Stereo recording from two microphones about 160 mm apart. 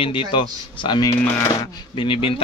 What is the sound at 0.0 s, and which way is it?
Speech, 30° left (ahead or behind).